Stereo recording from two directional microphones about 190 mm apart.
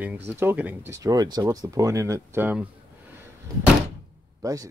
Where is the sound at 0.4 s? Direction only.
10° right (ahead or behind).